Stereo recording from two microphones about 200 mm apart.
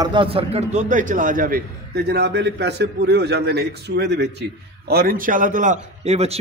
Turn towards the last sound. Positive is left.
turn(degrees=-30)  # may be behind; listen again after turning